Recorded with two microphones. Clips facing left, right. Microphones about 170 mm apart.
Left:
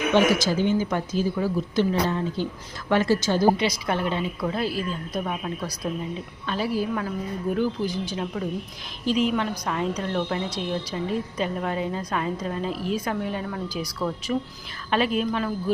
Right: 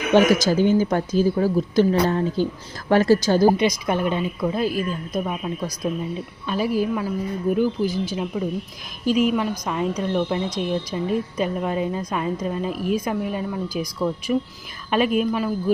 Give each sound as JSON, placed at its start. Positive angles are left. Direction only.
{"t": 0.1, "sound": "a woman's voice", "side_deg": -40}
{"t": 3.6, "sound": "speech", "side_deg": -15}